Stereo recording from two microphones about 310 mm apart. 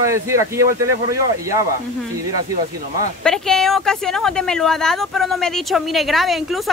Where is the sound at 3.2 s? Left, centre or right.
Centre.